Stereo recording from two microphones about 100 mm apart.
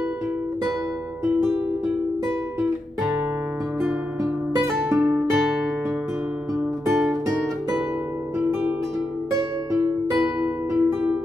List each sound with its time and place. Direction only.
4.9 s music: 15° right (ahead or behind)
9.8 s music: 15° right (ahead or behind)